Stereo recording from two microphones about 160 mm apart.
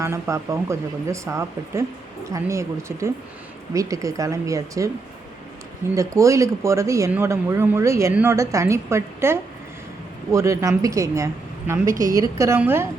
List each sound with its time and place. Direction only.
0.0 s a woman's voice: 15° right (ahead or behind)
5.9 s a woman's voice: 20° right (ahead or behind)